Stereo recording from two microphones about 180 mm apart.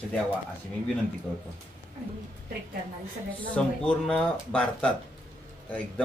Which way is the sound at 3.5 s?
5° left (ahead or behind).